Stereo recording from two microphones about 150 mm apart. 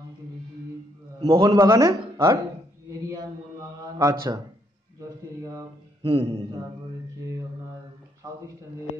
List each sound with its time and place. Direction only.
1.3 s a man's voice: 25° right (ahead or behind)
4.0 s a man's voice: 25° right (ahead or behind)
5.4 s a man's voice: 25° right (ahead or behind)
6.0 s speech: 45° right (ahead or behind)